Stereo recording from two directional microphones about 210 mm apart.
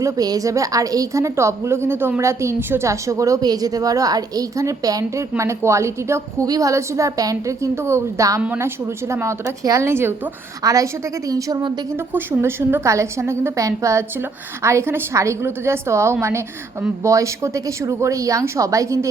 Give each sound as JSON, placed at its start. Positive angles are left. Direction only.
{"t": 0.0, "sound": "a woman's voice", "side_deg": -15}